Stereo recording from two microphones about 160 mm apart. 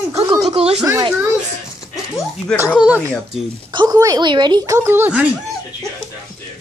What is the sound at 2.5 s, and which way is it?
Speech, 5° left (ahead or behind).